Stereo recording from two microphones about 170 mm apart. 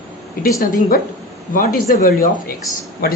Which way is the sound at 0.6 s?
50° left (ahead or behind).